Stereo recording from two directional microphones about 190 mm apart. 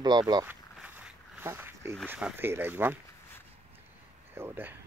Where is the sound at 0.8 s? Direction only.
5° right (ahead or behind).